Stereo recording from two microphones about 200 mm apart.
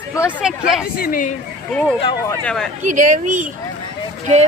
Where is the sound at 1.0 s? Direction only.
45° left (ahead or behind).